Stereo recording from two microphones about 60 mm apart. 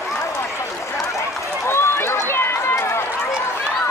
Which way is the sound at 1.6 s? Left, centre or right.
Left.